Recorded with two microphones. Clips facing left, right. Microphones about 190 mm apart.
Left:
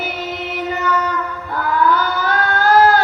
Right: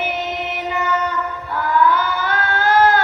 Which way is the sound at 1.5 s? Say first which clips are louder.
Even; 40° left (ahead or behind).